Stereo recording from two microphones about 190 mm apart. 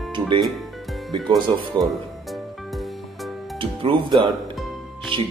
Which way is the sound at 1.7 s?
25° right (ahead or behind).